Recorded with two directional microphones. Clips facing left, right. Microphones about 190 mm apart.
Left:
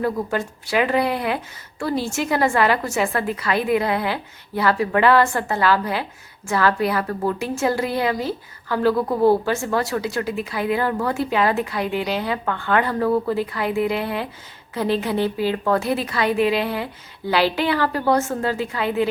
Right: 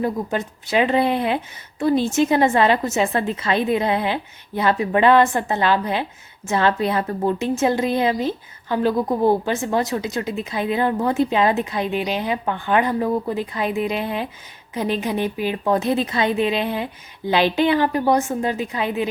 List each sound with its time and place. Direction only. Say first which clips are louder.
0.0 s a woman's voice: even; 20° right (ahead or behind)